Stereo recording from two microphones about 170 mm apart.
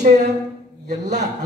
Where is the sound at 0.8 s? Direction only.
45° right (ahead or behind).